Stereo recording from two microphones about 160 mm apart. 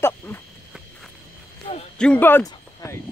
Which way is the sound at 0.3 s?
15° left (ahead or behind).